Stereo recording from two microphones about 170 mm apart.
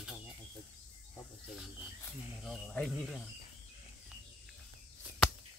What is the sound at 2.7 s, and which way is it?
Speech, 5° left (ahead or behind).